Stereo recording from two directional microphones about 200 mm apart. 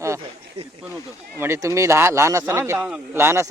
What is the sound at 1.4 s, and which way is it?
Speech, 15° right (ahead or behind).